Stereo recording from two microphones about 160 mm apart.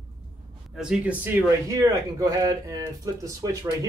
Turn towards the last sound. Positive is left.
turn(degrees=-20)  # may be behind; listen again after turning